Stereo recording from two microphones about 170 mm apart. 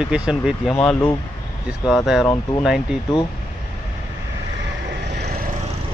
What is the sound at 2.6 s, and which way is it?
Speech, 5° right (ahead or behind).